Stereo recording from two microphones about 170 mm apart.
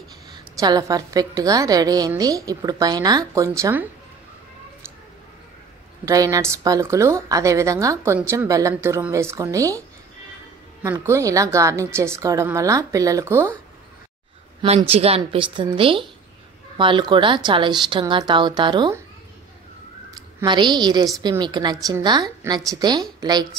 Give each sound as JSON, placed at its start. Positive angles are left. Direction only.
{"t": 0.3, "sound": "speech", "side_deg": -20}
{"t": 6.0, "sound": "a woman's voice", "side_deg": -20}
{"t": 14.6, "sound": "speech", "side_deg": -35}
{"t": 20.4, "sound": "speech", "side_deg": -25}